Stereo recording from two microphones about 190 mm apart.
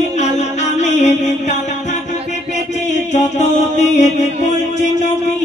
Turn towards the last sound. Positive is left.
turn(degrees=35)  # may be behind; listen again after turning